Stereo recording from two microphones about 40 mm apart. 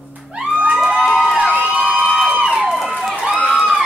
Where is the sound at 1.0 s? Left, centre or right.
Centre.